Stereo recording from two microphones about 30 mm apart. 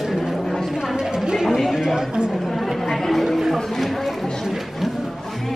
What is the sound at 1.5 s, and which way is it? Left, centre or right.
Speech, centre.